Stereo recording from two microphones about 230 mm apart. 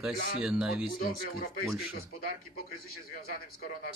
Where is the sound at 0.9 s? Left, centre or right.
Left.